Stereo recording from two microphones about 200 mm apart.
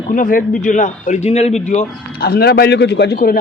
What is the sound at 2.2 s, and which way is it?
A man's voice, 50° left (ahead or behind).